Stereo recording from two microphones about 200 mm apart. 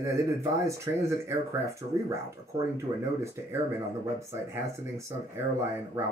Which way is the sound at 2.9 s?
30° right (ahead or behind).